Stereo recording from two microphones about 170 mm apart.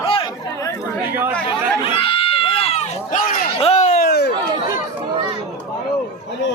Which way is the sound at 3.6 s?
40° left (ahead or behind).